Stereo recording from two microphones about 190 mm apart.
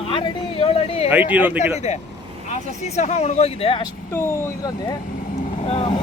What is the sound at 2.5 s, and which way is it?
Speech, 35° left (ahead or behind).